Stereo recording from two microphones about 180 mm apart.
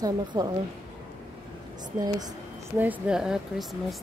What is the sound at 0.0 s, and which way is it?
Speech, 20° right (ahead or behind).